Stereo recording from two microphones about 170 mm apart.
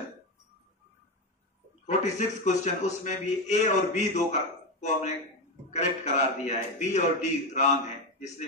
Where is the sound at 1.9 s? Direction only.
45° left (ahead or behind).